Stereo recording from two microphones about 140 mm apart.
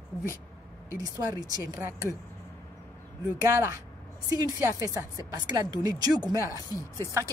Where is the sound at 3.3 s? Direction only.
20° right (ahead or behind).